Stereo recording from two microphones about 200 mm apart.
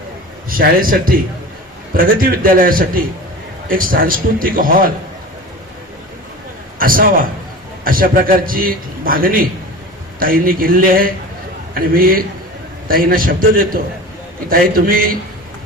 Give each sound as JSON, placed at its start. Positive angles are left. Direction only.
{"t": 0.5, "sound": "a man's voice", "side_deg": -45}
{"t": 6.7, "sound": "a man's voice", "side_deg": -45}